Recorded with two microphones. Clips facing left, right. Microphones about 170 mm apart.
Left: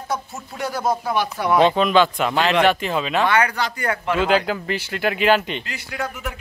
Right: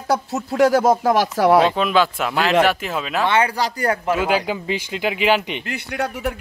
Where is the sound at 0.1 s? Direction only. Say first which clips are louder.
Right 8 dB; 85° right.